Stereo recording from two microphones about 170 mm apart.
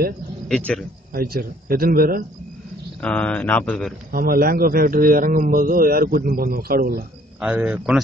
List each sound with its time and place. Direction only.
0.5 s speech: 5° left (ahead or behind)
1.1 s a man's voice: 60° right (ahead or behind)
3.0 s speech: 10° left (ahead or behind)
4.1 s a man's voice: 60° right (ahead or behind)
7.3 s speech: 5° right (ahead or behind)